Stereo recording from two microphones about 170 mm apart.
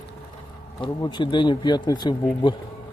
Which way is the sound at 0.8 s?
30° left (ahead or behind).